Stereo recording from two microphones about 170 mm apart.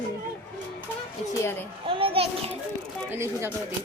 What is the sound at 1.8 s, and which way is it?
Children playing, 30° right (ahead or behind).